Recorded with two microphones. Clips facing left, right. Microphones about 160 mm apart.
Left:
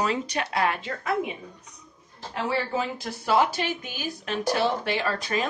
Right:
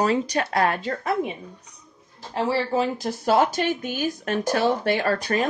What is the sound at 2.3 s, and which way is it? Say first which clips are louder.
Speech: right 4 dB; 35° right (ahead or behind).